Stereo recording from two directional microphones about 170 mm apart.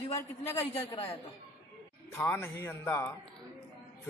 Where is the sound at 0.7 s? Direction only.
35° left (ahead or behind).